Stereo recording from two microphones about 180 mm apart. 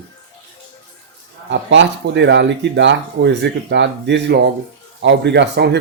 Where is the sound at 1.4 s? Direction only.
90° right.